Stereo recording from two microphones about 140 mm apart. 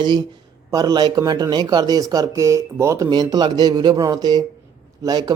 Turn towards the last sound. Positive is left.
turn(degrees=-30)  # may be behind; listen again after turning